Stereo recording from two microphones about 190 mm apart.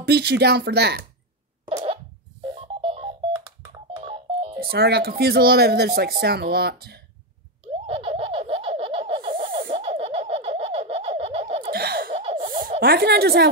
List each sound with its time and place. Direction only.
0.0 s speech: 60° right (ahead or behind)
1.7 s cough: 35° right (ahead or behind)
2.5 s telephone dialing: 30° right (ahead or behind)
4.6 s speech: 55° right (ahead or behind)
7.6 s baby laughter: 30° right (ahead or behind)
11.7 s laughter: 55° right (ahead or behind)
12.1 s laughter: 30° right (ahead or behind)
12.4 s a sound: 45° right (ahead or behind)
12.8 s speech: 55° right (ahead or behind)